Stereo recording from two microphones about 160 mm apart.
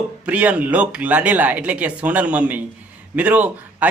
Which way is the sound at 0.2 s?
10° right (ahead or behind).